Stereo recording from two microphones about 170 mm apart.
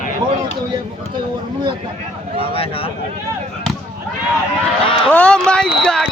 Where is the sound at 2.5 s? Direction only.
35° left (ahead or behind).